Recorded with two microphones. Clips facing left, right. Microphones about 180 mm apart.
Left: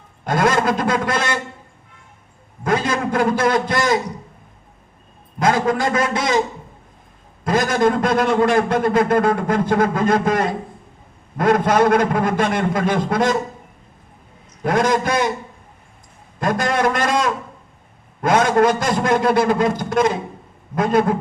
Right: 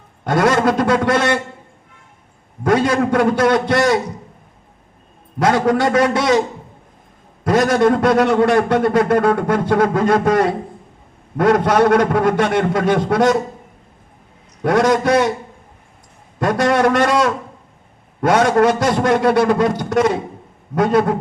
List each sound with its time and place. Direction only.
0.3 s a man's voice: 65° right (ahead or behind)
2.6 s a man's voice: 65° right (ahead or behind)
5.4 s a man's voice: 65° right (ahead or behind)
7.4 s a man's voice: 70° right (ahead or behind)
14.6 s a man's voice: 70° right (ahead or behind)
16.4 s a man's voice: 70° right (ahead or behind)